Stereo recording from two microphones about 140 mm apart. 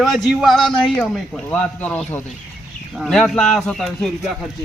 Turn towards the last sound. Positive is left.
turn(degrees=0)  # may be behind; listen again after turning